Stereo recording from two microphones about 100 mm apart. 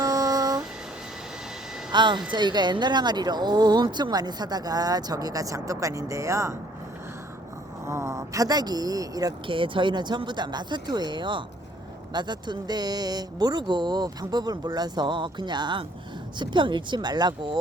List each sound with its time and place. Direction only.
0.0 s a sound: 35° right (ahead or behind)
1.9 s speech: 50° right (ahead or behind); by 6.6 s 30° right (ahead or behind)
7.9 s speech: 30° right (ahead or behind)
9.5 s speech: 60° right (ahead or behind)